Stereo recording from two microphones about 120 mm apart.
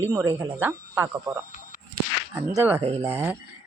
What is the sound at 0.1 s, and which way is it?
Speech, 20° right (ahead or behind).